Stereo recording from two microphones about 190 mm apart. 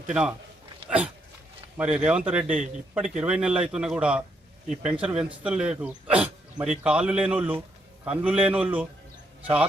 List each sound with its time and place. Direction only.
0.1 s speech: 5° right (ahead or behind)